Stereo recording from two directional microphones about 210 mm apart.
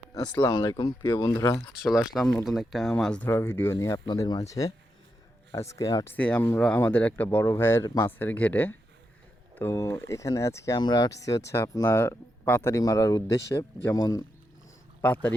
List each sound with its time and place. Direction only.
0.3 s speech: 10° left (ahead or behind)
1.8 s speech: centre (ahead or behind); by 6.1 s 15° left (ahead or behind)
6.1 s speech: 5° left (ahead or behind)